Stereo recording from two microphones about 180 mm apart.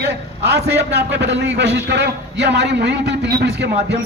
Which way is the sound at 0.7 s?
70° right (ahead or behind).